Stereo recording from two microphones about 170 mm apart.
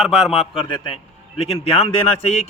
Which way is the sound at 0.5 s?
30° left (ahead or behind).